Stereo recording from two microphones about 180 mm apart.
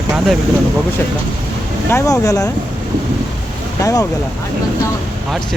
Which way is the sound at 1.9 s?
15° left (ahead or behind).